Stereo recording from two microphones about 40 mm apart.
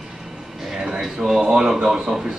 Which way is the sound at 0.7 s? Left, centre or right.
Centre.